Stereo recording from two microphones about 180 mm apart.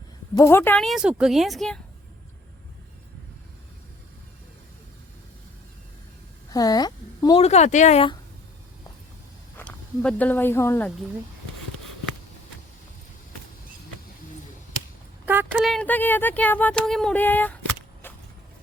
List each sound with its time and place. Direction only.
0.3 s a woman's voice: 15° left (ahead or behind)
6.5 s a sound: 20° left (ahead or behind)
7.4 s speech: 40° left (ahead or behind)
9.6 s speech: 5° left (ahead or behind)
15.6 s speech: 5° left (ahead or behind)